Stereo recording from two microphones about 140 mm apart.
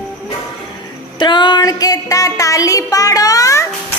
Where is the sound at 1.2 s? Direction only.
35° left (ahead or behind).